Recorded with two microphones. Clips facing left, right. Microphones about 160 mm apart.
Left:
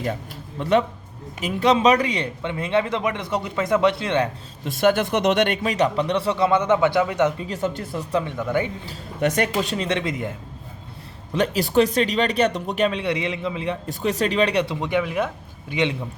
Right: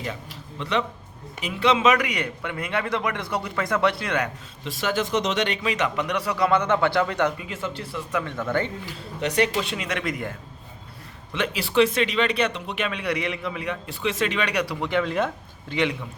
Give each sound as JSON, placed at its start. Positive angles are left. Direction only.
{"t": 0.6, "sound": "a man's voice", "side_deg": 45}
{"t": 4.6, "sound": "speech", "side_deg": 50}
{"t": 5.7, "sound": "a man's voice", "side_deg": 35}
{"t": 7.3, "sound": "speech", "side_deg": 35}
{"t": 8.2, "sound": "speech", "side_deg": 15}
{"t": 9.2, "sound": "speech", "side_deg": 45}
{"t": 11.3, "sound": "speech", "side_deg": 40}
{"t": 13.8, "sound": "a man's voice", "side_deg": 40}
{"t": 15.7, "sound": "a man's voice", "side_deg": 20}